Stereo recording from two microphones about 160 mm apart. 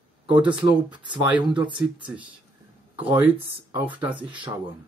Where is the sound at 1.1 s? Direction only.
30° right (ahead or behind).